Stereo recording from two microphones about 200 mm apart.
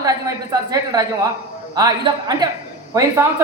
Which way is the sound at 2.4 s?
20° right (ahead or behind).